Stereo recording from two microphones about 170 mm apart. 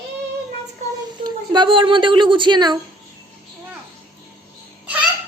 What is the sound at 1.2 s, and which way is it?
Speech, 25° right (ahead or behind).